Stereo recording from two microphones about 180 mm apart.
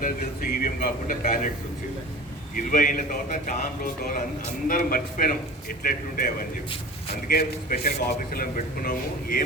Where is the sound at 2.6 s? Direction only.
45° left (ahead or behind).